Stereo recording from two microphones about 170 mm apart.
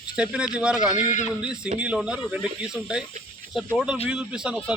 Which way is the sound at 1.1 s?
45° left (ahead or behind).